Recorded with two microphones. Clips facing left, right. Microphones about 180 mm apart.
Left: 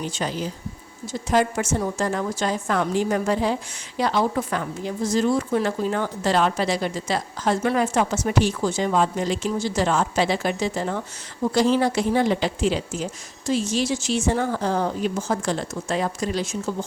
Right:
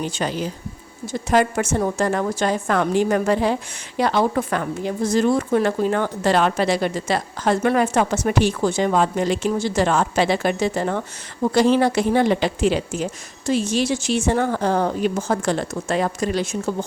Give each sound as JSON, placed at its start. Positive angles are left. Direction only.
{"t": 0.0, "sound": "a woman's voice", "side_deg": -65}